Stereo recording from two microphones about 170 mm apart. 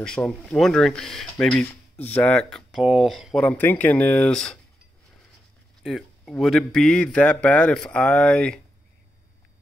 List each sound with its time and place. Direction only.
0.0 s speech: 5° left (ahead or behind)
5.8 s speech: centre (ahead or behind)